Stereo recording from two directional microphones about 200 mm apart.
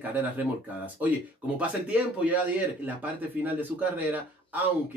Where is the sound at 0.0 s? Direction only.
10° right (ahead or behind).